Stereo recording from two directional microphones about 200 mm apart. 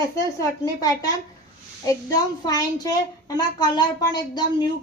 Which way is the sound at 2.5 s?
20° left (ahead or behind).